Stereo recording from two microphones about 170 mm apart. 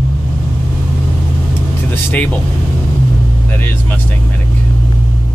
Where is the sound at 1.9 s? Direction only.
10° left (ahead or behind).